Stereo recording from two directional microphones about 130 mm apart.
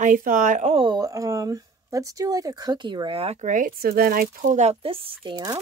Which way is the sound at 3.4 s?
85° right.